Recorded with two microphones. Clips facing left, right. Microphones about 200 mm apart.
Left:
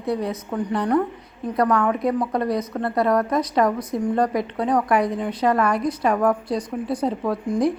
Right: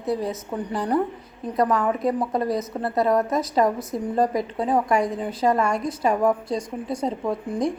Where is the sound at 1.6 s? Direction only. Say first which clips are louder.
Left 1 dB; 25° right (ahead or behind).